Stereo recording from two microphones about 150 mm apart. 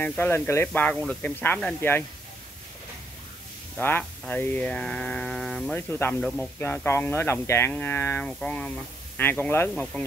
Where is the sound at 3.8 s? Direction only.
15° left (ahead or behind).